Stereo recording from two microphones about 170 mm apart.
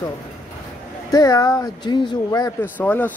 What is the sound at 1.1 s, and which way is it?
Speech, 20° left (ahead or behind).